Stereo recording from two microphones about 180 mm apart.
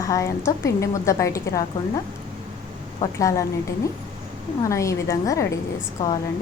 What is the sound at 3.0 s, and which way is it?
Speech, 20° left (ahead or behind).